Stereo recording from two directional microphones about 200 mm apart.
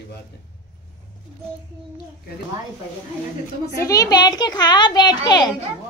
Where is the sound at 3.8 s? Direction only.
15° left (ahead or behind).